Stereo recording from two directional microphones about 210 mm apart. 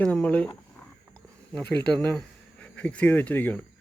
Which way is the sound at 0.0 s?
5° left (ahead or behind).